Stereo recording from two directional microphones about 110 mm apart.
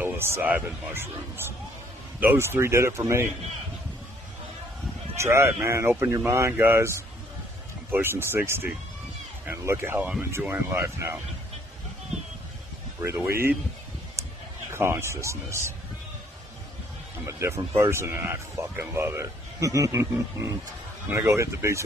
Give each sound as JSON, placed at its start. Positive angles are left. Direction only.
{"t": 0.0, "sound": "a man's voice", "side_deg": -20}
{"t": 5.1, "sound": "speech", "side_deg": -25}
{"t": 13.0, "sound": "speech", "side_deg": -20}
{"t": 14.2, "sound": "a sound", "side_deg": -30}
{"t": 14.7, "sound": "speech", "side_deg": -25}
{"t": 17.3, "sound": "speech", "side_deg": -25}